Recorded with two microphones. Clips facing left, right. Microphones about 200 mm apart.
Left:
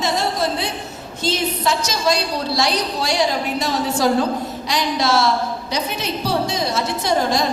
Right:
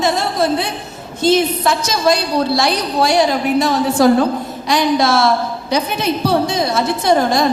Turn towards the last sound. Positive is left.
turn(degrees=-55)  # may be behind; listen again after turning